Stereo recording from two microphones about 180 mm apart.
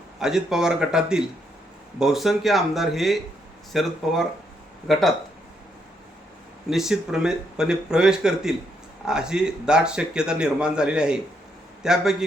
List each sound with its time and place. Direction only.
0.2 s speech: 5° right (ahead or behind)
6.7 s speech: centre (ahead or behind)